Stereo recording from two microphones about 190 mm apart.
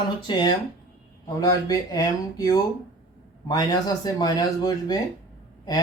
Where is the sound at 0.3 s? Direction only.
25° left (ahead or behind).